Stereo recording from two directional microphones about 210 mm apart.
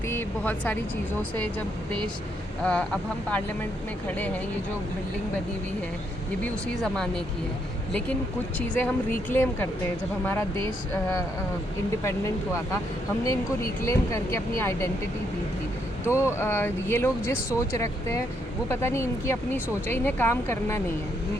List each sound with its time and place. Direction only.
0.1 s speech: 10° left (ahead or behind)
2.6 s speech: 5° left (ahead or behind)
6.4 s speech: 5° left (ahead or behind)
8.5 s speech: 5° left (ahead or behind)
13.8 s speech: 15° left (ahead or behind)
16.1 s speech: 10° left (ahead or behind)